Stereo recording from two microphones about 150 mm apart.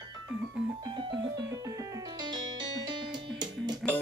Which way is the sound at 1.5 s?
25° right (ahead or behind).